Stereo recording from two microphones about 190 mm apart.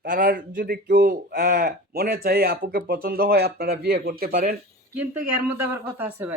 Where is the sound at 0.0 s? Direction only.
45° right (ahead or behind).